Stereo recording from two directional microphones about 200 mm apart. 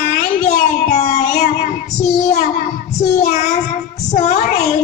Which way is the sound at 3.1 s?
35° left (ahead or behind).